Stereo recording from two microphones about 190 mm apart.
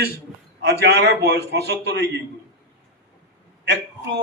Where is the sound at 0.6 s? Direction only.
60° right (ahead or behind).